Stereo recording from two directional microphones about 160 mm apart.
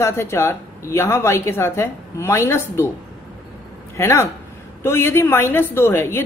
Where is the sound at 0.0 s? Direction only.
15° left (ahead or behind).